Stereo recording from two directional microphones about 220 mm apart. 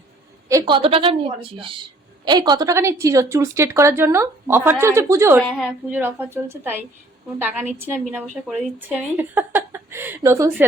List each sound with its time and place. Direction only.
0.4 s a woman's voice: 20° right (ahead or behind)
5.4 s a woman's voice: centre (ahead or behind)
6.0 s a woman's voice: 10° right (ahead or behind)